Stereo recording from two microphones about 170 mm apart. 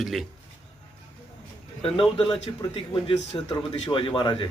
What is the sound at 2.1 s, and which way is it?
A man's voice, 30° left (ahead or behind).